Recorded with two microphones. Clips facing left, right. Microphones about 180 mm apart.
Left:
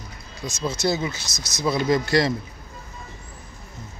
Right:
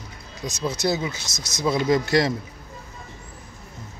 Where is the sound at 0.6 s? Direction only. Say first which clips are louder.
Even; 15° right (ahead or behind).